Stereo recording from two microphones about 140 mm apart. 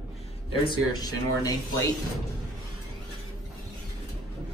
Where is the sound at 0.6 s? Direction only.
30° left (ahead or behind).